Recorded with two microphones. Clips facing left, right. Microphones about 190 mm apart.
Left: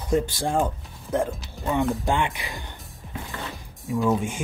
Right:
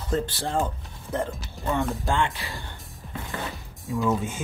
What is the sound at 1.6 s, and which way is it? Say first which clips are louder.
Speech: left 1 dB; centre (ahead or behind).